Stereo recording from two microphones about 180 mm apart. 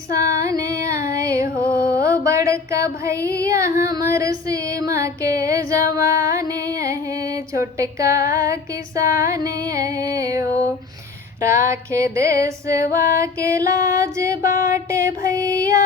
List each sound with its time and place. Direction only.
0.1 s female singing: 15° right (ahead or behind)